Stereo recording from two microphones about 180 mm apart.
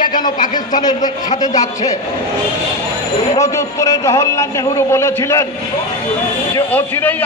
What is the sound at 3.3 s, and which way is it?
A man's voice, 15° left (ahead or behind).